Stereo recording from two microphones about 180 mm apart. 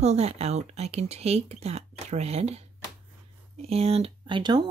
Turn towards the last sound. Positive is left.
turn(degrees=-25)  # may be behind; listen again after turning